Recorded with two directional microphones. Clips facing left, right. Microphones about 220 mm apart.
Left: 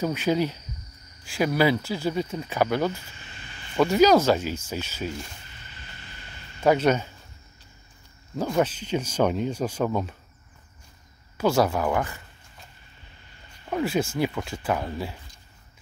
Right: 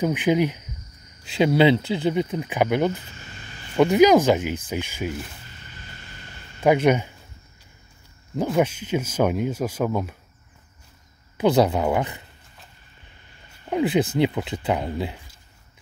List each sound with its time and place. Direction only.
0.0 s speech: 15° right (ahead or behind)
6.6 s speech: 15° right (ahead or behind)
8.5 s speech: 10° right (ahead or behind)
11.3 s speech: 20° right (ahead or behind)
13.7 s speech: 20° right (ahead or behind)